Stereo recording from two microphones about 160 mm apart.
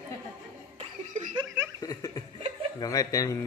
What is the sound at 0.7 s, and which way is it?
Chuckle, 50° right (ahead or behind).